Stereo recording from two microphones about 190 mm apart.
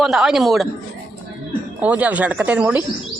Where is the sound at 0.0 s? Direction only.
Centre (ahead or behind).